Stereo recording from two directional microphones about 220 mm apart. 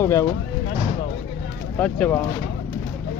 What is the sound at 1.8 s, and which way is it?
Speech, 5° left (ahead or behind).